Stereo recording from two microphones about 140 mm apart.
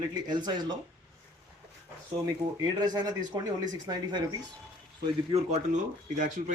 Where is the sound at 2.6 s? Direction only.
30° right (ahead or behind).